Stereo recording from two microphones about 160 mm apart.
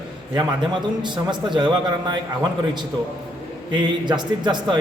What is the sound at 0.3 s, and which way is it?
A man's voice, 30° right (ahead or behind).